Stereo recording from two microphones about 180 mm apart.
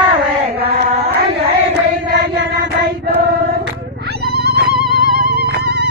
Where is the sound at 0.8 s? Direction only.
60° right (ahead or behind).